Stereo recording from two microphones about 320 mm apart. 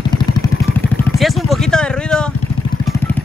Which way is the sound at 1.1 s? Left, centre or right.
Centre.